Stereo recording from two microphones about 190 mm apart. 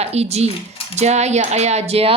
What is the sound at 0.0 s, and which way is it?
Speech, 35° right (ahead or behind).